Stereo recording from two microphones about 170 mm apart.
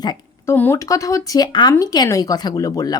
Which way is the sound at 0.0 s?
25° left (ahead or behind).